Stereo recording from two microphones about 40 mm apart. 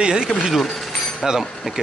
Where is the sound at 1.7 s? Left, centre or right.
Centre.